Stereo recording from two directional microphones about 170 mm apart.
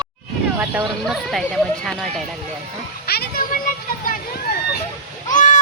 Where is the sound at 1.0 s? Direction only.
Centre (ahead or behind).